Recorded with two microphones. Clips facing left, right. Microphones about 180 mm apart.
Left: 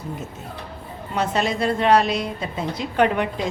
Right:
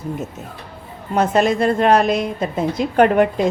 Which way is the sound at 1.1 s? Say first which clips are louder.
Right 7 dB; 50° right (ahead or behind).